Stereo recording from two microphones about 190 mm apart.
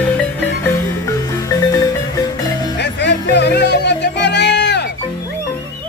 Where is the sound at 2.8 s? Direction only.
65° left (ahead or behind).